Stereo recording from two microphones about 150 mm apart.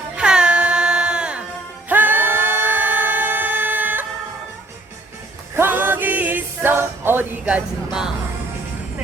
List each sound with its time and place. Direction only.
0.2 s music: 5° right (ahead or behind)
1.9 s singing: 10° right (ahead or behind)
5.5 s a capella: 15° right (ahead or behind)